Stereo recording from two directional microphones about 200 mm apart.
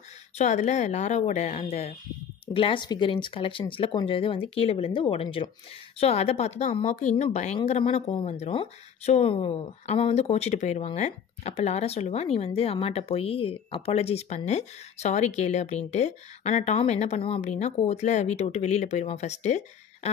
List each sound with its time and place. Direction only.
0.4 s speech: 35° left (ahead or behind)